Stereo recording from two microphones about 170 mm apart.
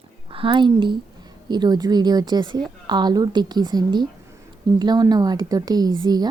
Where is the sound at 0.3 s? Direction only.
30° right (ahead or behind).